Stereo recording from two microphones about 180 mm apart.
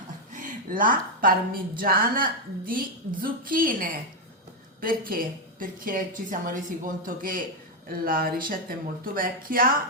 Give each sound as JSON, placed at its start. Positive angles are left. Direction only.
{"t": 0.3, "sound": "a woman's voice", "side_deg": -45}